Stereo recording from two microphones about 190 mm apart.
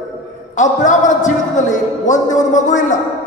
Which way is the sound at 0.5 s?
40° left (ahead or behind).